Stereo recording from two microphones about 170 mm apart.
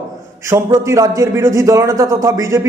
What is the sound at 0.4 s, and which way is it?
A man's voice, 15° right (ahead or behind).